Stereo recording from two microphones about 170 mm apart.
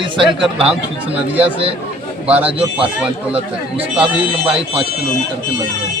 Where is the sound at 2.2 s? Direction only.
10° right (ahead or behind).